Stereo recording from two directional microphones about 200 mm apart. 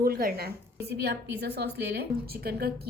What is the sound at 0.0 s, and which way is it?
A woman's voice, 45° right (ahead or behind).